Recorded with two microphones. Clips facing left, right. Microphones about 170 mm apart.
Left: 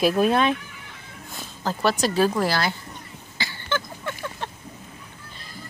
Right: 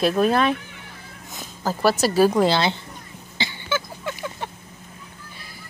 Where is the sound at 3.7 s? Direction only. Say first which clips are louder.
Even; 10° right (ahead or behind).